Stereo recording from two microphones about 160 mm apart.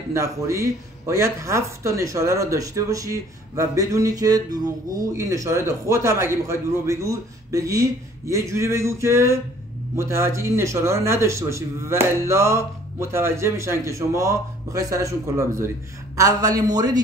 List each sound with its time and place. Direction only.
0.1 s speech: 20° right (ahead or behind)